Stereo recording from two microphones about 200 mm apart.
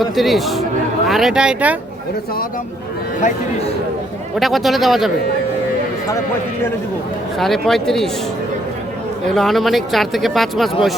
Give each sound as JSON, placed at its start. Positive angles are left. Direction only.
{"t": 0.0, "sound": "speech", "side_deg": 0}
{"t": 4.4, "sound": "speech", "side_deg": 0}
{"t": 7.3, "sound": "speech", "side_deg": 0}
{"t": 9.3, "sound": "speech", "side_deg": 0}